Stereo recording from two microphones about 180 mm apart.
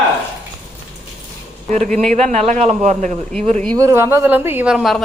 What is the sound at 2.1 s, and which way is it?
A man's voice, 35° right (ahead or behind).